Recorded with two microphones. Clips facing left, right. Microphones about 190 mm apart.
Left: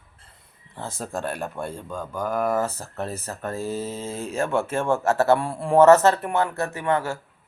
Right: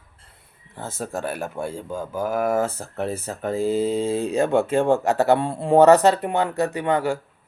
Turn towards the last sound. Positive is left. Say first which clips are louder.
# right 3 dB
turn(degrees=-15)  # may be behind; listen again after turning